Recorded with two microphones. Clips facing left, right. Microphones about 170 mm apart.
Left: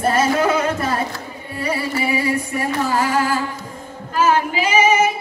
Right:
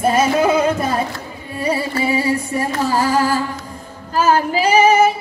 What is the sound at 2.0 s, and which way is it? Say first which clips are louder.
Music: right 3 dB; 30° right (ahead or behind).